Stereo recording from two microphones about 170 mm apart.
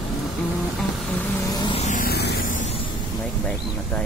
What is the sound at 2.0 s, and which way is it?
Vehicle, 70° left (ahead or behind).